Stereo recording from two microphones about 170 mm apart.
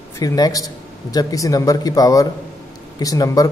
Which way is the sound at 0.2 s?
20° left (ahead or behind).